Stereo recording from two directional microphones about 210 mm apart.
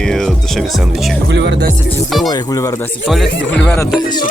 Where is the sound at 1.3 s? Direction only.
55° right (ahead or behind).